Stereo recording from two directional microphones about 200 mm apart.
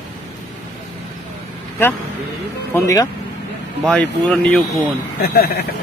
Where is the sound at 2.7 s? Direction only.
15° left (ahead or behind).